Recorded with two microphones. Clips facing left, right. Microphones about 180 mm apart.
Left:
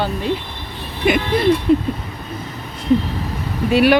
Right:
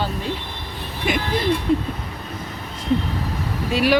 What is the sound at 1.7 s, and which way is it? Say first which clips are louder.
Speech: left 4 dB; 65° left (ahead or behind).